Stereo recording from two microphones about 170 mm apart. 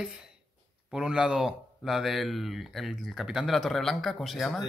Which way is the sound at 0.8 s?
5° right (ahead or behind).